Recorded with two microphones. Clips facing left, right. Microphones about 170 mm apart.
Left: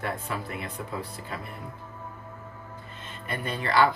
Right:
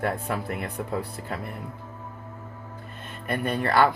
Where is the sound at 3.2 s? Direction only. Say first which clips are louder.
Right 5 dB; 55° right (ahead or behind).